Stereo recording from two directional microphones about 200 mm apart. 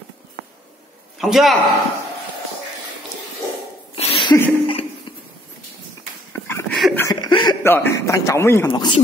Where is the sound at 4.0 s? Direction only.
25° left (ahead or behind).